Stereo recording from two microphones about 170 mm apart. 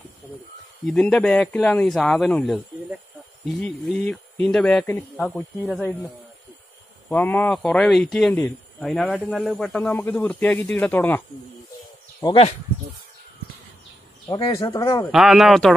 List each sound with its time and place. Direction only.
0.8 s speech: 5° left (ahead or behind)
14.2 s speech: 20° left (ahead or behind)
15.0 s speech: centre (ahead or behind)